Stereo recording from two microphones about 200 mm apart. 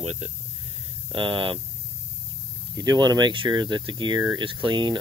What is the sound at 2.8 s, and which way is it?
Speech, 20° right (ahead or behind).